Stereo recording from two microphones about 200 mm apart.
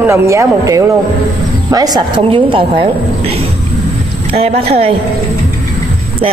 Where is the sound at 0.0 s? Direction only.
15° right (ahead or behind).